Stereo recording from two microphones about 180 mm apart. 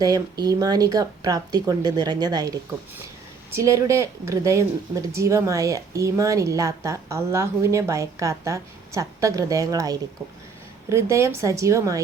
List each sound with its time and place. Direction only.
0.0 s speech: 20° right (ahead or behind)